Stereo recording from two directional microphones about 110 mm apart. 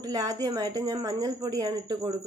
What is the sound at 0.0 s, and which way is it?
Speech, 35° right (ahead or behind).